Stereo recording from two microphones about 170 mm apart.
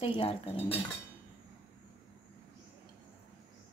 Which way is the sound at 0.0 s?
30° left (ahead or behind).